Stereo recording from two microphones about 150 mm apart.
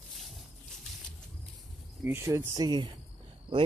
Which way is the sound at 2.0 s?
15° right (ahead or behind).